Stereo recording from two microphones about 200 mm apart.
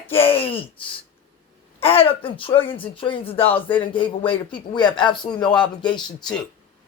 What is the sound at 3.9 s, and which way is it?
Speech, 25° left (ahead or behind).